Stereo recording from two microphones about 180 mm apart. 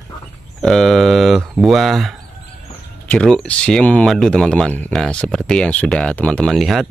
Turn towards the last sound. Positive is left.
turn(degrees=0)  # may be behind; listen again after turning